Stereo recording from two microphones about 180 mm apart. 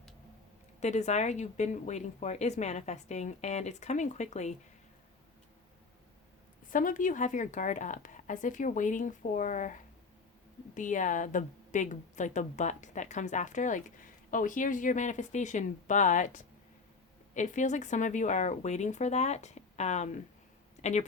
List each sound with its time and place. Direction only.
0.8 s speech: 40° left (ahead or behind)
6.7 s a woman's voice: 50° left (ahead or behind)
10.8 s a woman's voice: 45° left (ahead or behind)